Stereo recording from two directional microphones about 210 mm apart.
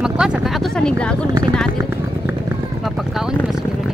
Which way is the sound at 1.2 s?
20° right (ahead or behind).